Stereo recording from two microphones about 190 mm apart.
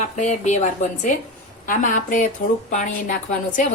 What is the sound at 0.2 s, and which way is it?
A woman's voice, 40° left (ahead or behind).